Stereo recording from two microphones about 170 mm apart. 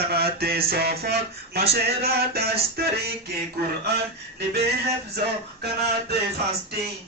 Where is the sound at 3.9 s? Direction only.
70° right (ahead or behind).